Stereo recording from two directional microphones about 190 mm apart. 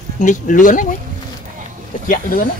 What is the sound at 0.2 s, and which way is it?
Speech, 40° left (ahead or behind).